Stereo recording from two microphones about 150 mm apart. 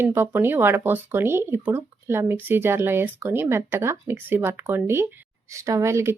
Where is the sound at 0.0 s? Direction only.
15° right (ahead or behind).